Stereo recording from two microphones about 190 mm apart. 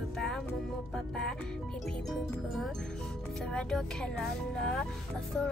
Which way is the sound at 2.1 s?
Centre (ahead or behind).